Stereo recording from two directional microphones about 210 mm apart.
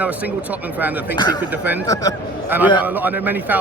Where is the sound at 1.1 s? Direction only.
20° left (ahead or behind).